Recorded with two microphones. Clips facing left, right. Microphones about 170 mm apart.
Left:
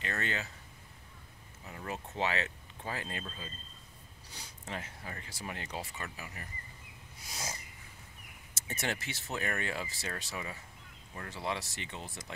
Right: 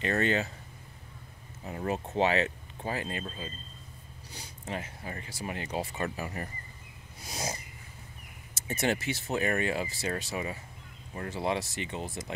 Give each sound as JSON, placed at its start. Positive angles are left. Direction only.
{"t": 0.0, "sound": "speech", "side_deg": -25}
{"t": 1.6, "sound": "speech", "side_deg": -40}
{"t": 1.9, "sound": "speech", "side_deg": -20}
{"t": 4.4, "sound": "speech", "side_deg": -10}
{"t": 5.9, "sound": "speech", "side_deg": -40}
{"t": 7.2, "sound": "speech", "side_deg": -20}
{"t": 8.8, "sound": "speech", "side_deg": -15}